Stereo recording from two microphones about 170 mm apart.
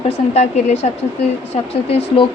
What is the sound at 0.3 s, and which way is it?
Speech, 40° left (ahead or behind).